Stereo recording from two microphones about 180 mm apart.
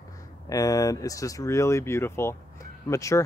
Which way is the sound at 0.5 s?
20° left (ahead or behind).